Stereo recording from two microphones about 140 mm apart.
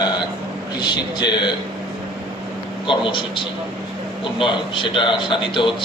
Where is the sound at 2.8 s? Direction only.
35° left (ahead or behind).